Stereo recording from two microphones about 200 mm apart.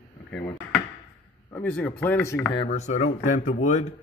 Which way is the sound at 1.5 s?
10° left (ahead or behind).